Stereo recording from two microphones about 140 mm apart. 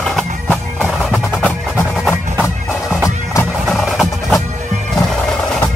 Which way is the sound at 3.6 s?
Centre (ahead or behind).